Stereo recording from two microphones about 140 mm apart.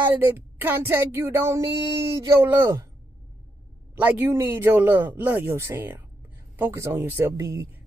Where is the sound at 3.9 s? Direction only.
10° right (ahead or behind).